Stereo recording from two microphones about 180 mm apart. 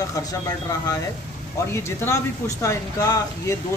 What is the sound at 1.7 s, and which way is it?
Speech, 15° left (ahead or behind).